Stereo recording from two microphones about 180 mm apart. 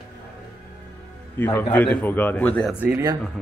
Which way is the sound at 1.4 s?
10° left (ahead or behind).